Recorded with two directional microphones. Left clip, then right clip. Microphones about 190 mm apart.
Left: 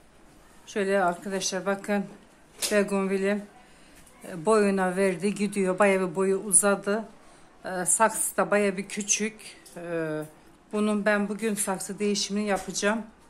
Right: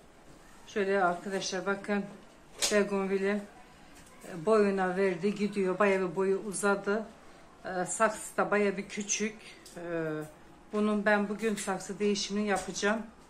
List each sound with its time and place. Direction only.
0.7 s a woman's voice: 50° left (ahead or behind)